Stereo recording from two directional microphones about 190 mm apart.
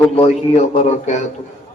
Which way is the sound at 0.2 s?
35° left (ahead or behind).